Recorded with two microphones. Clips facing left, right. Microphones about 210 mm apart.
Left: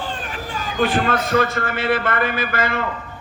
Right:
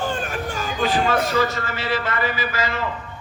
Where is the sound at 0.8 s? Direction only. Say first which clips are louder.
Left 1 dB; 55° left (ahead or behind).